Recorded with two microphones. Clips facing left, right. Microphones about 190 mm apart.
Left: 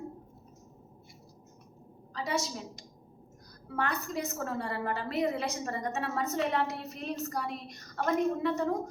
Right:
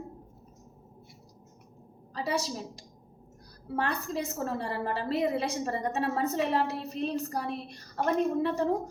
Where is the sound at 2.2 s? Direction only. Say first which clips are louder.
Right 2 dB; 35° right (ahead or behind).